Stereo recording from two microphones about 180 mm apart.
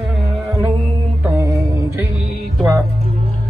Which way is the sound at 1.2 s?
15° right (ahead or behind).